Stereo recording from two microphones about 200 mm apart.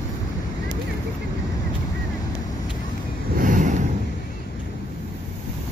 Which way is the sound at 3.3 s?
40° right (ahead or behind).